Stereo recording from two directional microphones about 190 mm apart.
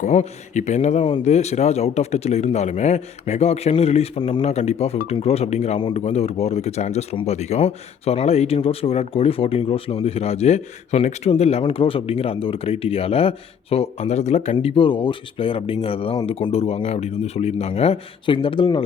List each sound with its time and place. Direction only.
0.0 s speech: 40° left (ahead or behind)